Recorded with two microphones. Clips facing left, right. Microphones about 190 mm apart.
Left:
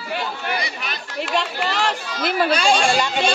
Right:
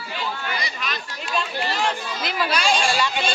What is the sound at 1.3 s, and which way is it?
Speech, 75° left (ahead or behind).